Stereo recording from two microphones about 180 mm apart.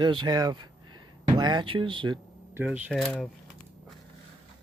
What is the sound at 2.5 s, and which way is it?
Speech, 10° right (ahead or behind).